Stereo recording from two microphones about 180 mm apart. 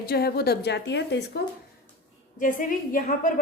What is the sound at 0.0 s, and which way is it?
A woman's voice, 60° left (ahead or behind).